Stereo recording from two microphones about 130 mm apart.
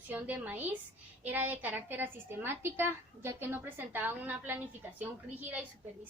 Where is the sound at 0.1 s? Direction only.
15° right (ahead or behind).